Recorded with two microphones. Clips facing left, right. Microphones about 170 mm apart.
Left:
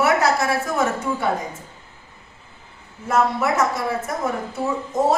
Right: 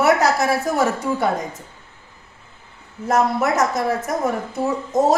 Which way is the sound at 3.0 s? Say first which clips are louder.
Right 2 dB; 40° right (ahead or behind).